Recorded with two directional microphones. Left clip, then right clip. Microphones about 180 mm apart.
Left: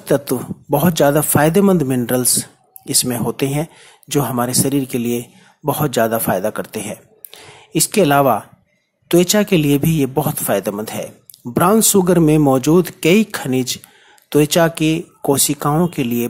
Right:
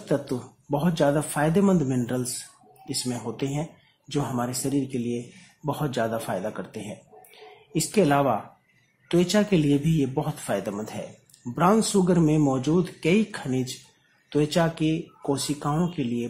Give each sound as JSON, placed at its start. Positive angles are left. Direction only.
{"t": 0.0, "sound": "speech", "side_deg": 35}